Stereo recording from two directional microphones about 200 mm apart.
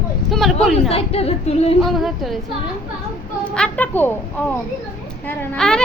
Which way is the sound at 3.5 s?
5° left (ahead or behind).